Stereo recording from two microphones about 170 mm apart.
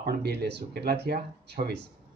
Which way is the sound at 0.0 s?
70° right (ahead or behind).